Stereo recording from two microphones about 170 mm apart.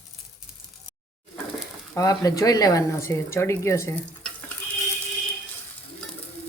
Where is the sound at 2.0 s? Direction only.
20° left (ahead or behind).